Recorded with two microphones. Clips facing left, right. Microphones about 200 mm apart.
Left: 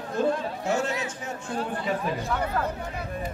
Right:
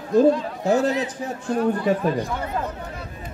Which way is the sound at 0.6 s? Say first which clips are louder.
Right 10 dB; 35° right (ahead or behind).